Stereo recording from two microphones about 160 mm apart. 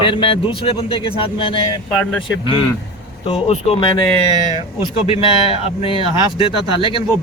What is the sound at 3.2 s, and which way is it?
Speech, 40° left (ahead or behind).